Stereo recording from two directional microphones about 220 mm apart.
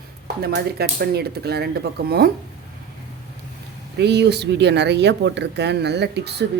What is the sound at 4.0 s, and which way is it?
Speech, 50° right (ahead or behind).